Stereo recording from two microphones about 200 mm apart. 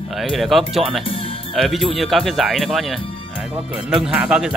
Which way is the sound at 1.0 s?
25° left (ahead or behind).